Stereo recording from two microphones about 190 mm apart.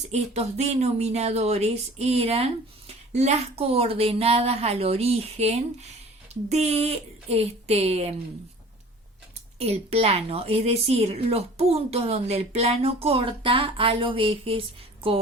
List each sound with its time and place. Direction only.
0.1 s speech: 35° right (ahead or behind)
9.6 s speech: 30° right (ahead or behind)